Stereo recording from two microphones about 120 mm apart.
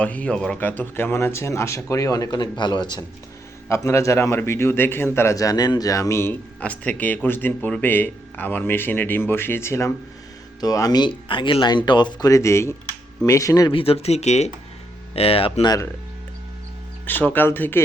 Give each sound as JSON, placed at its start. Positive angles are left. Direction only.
{"t": 0.0, "sound": "a man's voice", "side_deg": 10}
{"t": 3.7, "sound": "a man's voice", "side_deg": 25}
{"t": 12.3, "sound": "a man's voice", "side_deg": 25}
{"t": 13.7, "sound": "speech", "side_deg": 55}
{"t": 15.1, "sound": "speech", "side_deg": 55}
{"t": 17.1, "sound": "speech", "side_deg": 15}